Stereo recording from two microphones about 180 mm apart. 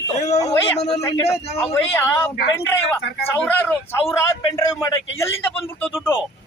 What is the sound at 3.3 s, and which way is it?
A man's voice, 10° left (ahead or behind).